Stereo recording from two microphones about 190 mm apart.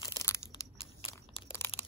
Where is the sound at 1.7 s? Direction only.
30° left (ahead or behind).